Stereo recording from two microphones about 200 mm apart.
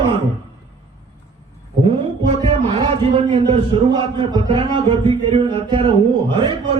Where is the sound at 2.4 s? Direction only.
30° right (ahead or behind).